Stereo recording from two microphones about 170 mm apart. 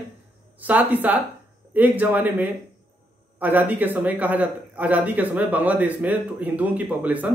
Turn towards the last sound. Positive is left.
turn(degrees=-10)  # may be behind; listen again after turning